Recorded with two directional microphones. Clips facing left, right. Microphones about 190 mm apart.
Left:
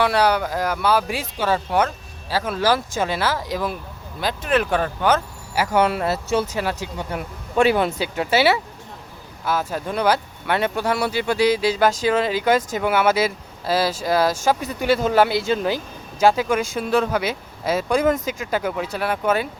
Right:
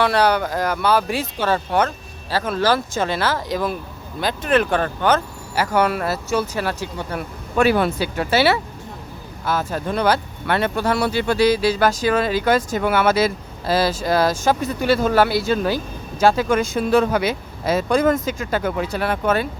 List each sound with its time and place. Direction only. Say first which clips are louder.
0.0 s speech: right 1 dB; 10° left (ahead or behind)
5.7 s speech: even; 25° left (ahead or behind)